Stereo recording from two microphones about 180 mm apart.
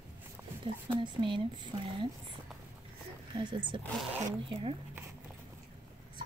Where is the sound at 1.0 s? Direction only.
25° right (ahead or behind).